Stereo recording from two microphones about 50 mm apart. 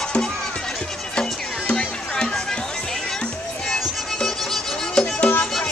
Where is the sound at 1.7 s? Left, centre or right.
Left.